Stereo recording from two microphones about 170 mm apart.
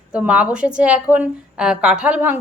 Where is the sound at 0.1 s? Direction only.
5° right (ahead or behind).